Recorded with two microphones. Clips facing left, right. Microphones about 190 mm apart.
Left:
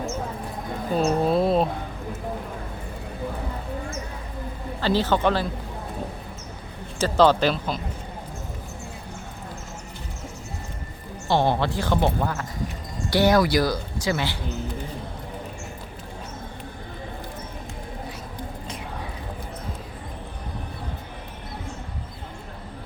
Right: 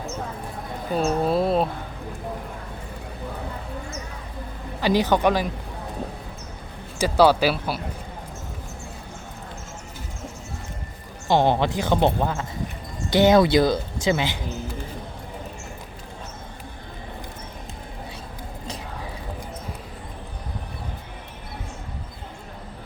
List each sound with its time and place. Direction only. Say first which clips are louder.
0.9 s speech: left 1 dB; centre (ahead or behind)
4.8 s speech: right 2 dB; 15° right (ahead or behind)
7.0 s speech: right 1 dB; 10° right (ahead or behind)
11.3 s speech: right 2 dB; 15° right (ahead or behind)